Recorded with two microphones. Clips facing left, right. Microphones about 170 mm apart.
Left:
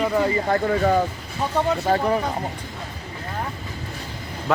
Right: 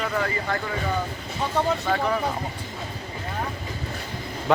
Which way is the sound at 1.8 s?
35° left (ahead or behind).